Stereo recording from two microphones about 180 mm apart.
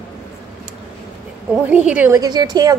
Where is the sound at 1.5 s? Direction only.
5° right (ahead or behind).